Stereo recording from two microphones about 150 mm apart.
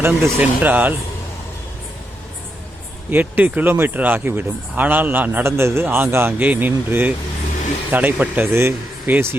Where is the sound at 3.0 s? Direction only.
10° right (ahead or behind).